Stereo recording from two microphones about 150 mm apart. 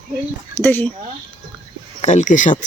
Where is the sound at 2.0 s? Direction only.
50° left (ahead or behind).